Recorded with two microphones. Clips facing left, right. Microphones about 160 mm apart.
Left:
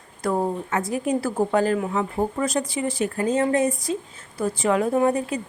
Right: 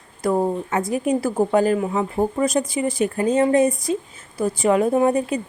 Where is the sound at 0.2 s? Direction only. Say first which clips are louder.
Right 3 dB; 10° right (ahead or behind).